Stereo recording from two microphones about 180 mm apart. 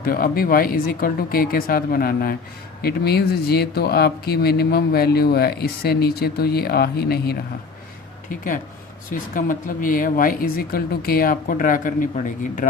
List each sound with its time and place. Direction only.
0.0 s speech: 55° left (ahead or behind)
9.3 s speech: 50° left (ahead or behind)